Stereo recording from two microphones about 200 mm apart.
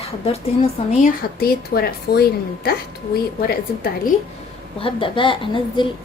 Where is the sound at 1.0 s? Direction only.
50° left (ahead or behind).